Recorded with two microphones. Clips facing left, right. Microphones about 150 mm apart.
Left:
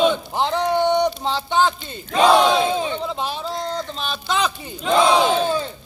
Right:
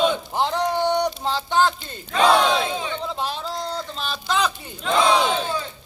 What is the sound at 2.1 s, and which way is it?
Battle cry, 20° left (ahead or behind).